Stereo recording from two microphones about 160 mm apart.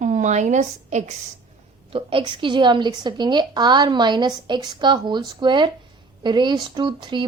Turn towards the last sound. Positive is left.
turn(degrees=-30)  # may be behind; listen again after turning